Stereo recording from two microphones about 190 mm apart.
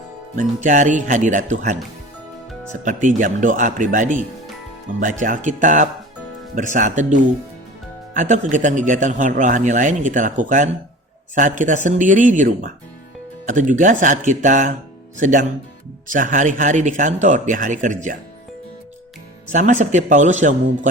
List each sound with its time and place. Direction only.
0.3 s speech: 40° right (ahead or behind)
3.2 s speech: 45° right (ahead or behind)
19.5 s speech: 40° right (ahead or behind)